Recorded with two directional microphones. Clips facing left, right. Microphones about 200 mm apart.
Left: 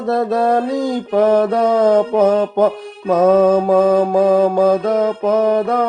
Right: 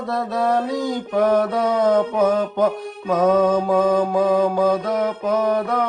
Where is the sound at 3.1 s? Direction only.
55° left (ahead or behind).